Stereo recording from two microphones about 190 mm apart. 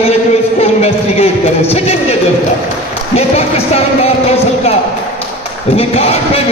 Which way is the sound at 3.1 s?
35° left (ahead or behind).